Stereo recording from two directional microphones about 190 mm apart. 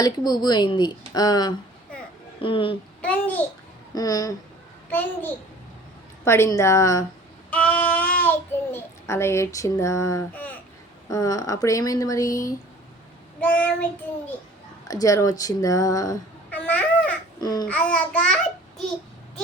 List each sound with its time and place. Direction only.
0.0 s speech: 20° left (ahead or behind)
3.0 s speech: 5° left (ahead or behind)
3.9 s speech: 20° left (ahead or behind)
7.5 s a sound: 10° left (ahead or behind)
8.2 s child singing: 10° left (ahead or behind)
11.1 s speech: 20° left (ahead or behind)
14.8 s speech: 20° left (ahead or behind)
16.5 s cat: 5° left (ahead or behind)
17.4 s babbling: 20° left (ahead or behind)
17.7 s speech: 5° left (ahead or behind)